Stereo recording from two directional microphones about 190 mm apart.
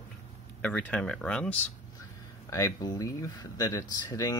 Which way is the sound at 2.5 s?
20° left (ahead or behind).